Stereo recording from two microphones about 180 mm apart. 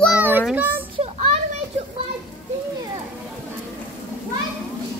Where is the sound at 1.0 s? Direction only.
35° right (ahead or behind).